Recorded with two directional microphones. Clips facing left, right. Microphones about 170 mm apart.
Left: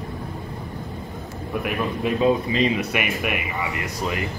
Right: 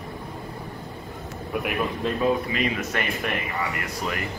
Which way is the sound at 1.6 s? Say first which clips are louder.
Left 1 dB; centre (ahead or behind).